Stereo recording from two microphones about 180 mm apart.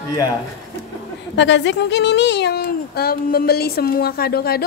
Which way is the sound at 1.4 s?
75° left (ahead or behind).